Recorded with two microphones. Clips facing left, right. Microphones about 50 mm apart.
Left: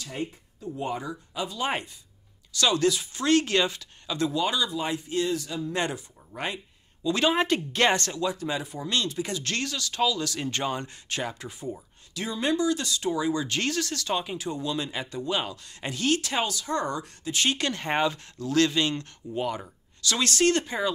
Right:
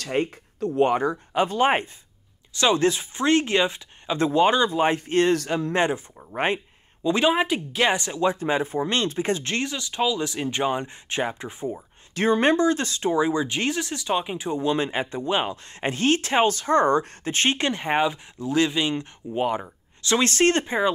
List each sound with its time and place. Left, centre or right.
0.0 s speech: right
5.7 s speech: right
7.2 s speech: centre
8.2 s speech: right
12.1 s speech: right